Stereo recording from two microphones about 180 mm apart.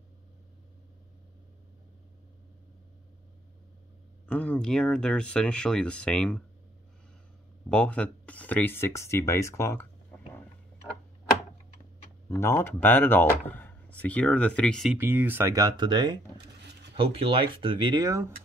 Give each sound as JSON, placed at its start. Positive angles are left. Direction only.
{"t": 4.3, "sound": "speech", "side_deg": 5}
{"t": 7.7, "sound": "speech", "side_deg": 5}
{"t": 12.3, "sound": "speech", "side_deg": 15}
{"t": 15.0, "sound": "speech", "side_deg": -10}